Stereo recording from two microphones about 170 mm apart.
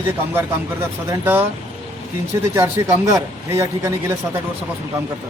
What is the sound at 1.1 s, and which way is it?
Speech, 10° right (ahead or behind).